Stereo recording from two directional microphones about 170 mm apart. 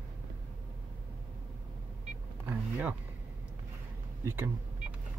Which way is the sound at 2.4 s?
10° right (ahead or behind).